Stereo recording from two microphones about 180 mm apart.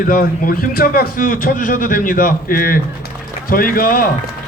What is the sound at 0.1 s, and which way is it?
Speech, 50° left (ahead or behind).